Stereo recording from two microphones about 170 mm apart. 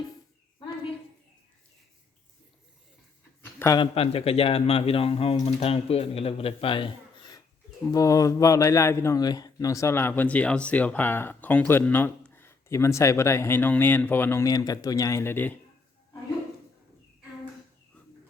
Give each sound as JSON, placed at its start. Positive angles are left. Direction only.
{"t": 3.6, "sound": "a man's voice", "side_deg": 20}
{"t": 3.9, "sound": "a man's voice", "side_deg": 35}